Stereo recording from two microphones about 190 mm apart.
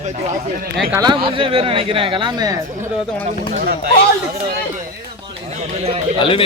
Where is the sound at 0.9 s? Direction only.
25° right (ahead or behind).